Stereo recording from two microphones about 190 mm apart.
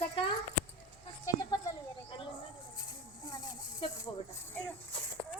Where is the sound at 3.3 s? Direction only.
20° left (ahead or behind).